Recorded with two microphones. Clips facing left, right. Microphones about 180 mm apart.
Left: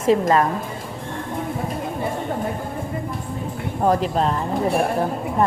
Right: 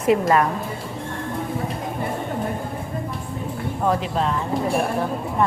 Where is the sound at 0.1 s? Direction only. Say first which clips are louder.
Left 1 dB; 30° left (ahead or behind).